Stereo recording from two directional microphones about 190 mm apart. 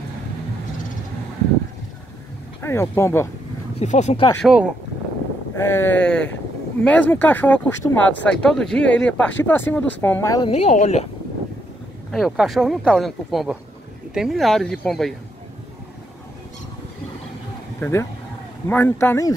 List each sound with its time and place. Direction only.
2.6 s speech: 15° left (ahead or behind)
3.8 s speech: 40° left (ahead or behind)
4.4 s speech: 5° right (ahead or behind)
5.6 s speech: 10° left (ahead or behind)
10.4 s speech: 35° left (ahead or behind)
12.1 s speech: centre (ahead or behind)
17.7 s speech: 10° left (ahead or behind)